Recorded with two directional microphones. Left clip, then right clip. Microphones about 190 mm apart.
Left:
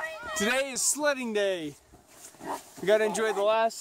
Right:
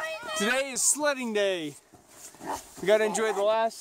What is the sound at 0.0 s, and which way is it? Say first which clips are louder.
Cat: right 2 dB; 50° right (ahead or behind).